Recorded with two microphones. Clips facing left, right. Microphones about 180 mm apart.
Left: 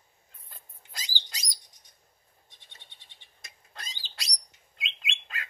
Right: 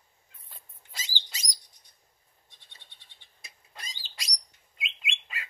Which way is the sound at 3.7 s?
5° right (ahead or behind).